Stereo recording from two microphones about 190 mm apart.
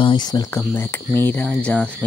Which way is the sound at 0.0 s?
25° left (ahead or behind).